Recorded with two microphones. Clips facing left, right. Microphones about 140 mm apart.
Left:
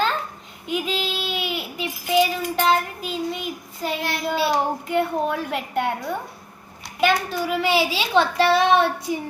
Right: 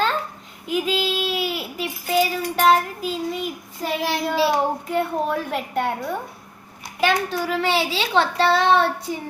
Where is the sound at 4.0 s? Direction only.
90° right.